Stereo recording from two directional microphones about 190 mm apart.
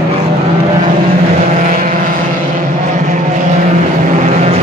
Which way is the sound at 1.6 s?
45° right (ahead or behind).